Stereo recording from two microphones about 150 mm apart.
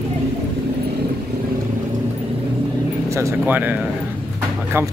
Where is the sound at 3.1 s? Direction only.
20° right (ahead or behind).